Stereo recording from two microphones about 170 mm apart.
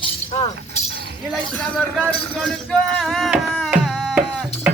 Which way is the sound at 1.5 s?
5° left (ahead or behind).